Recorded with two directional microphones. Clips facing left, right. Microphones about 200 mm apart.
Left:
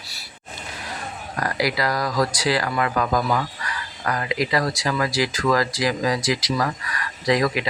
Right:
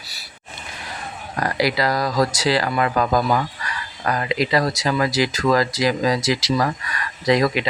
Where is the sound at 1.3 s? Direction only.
25° right (ahead or behind).